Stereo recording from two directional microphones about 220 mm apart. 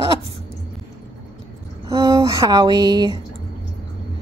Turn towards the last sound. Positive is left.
turn(degrees=-20)  # may be behind; listen again after turning